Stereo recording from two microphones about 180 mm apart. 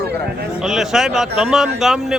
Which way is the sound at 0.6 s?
Centre (ahead or behind).